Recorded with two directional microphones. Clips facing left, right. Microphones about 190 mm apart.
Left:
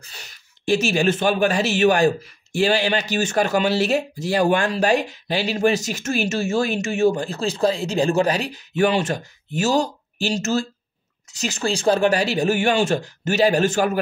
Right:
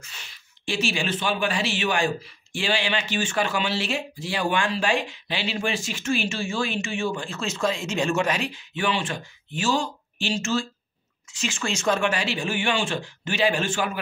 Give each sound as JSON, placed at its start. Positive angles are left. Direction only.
{"t": 0.0, "sound": "speech", "side_deg": 40}